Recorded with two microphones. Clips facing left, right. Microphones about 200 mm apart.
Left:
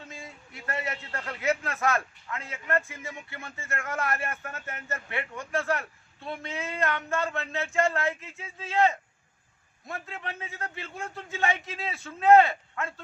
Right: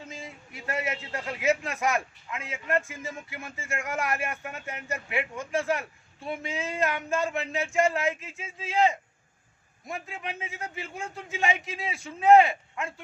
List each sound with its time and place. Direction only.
0.1 s a man's voice: 20° right (ahead or behind)